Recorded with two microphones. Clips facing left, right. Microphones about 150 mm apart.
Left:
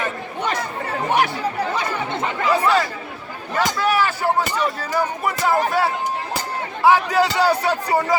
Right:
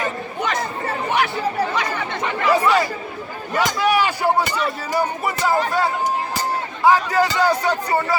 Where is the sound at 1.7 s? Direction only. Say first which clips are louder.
Even; 25° left (ahead or behind).